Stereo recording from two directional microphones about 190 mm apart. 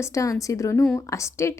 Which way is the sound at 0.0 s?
15° left (ahead or behind).